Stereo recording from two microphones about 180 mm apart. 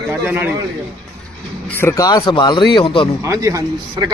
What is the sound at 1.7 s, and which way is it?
Speech, 15° left (ahead or behind).